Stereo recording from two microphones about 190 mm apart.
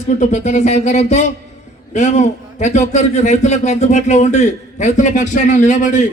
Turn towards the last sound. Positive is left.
turn(degrees=40)  # may be behind; listen again after turning